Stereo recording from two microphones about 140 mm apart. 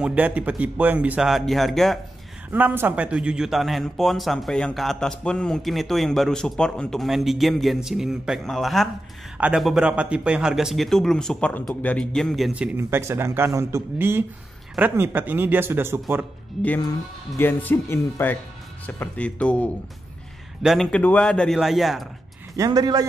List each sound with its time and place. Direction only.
0.0 s speech: 10° right (ahead or behind)
2.5 s a man's voice: 15° right (ahead or behind)
17.4 s a man's voice: 15° left (ahead or behind)
22.6 s speech: 30° right (ahead or behind)